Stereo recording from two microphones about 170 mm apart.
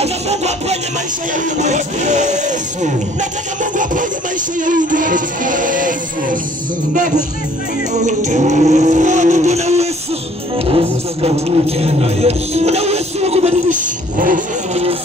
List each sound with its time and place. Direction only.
0.0 s music: 40° right (ahead or behind)
4.6 s music: 50° right (ahead or behind)